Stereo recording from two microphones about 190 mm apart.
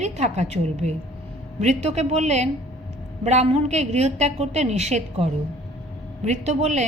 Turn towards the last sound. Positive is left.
turn(degrees=-35)  # may be behind; listen again after turning